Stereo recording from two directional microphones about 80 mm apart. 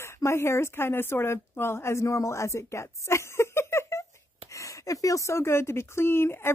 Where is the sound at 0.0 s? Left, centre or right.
Left.